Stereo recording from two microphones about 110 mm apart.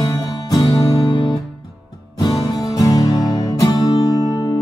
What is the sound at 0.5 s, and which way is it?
Music, 35° left (ahead or behind).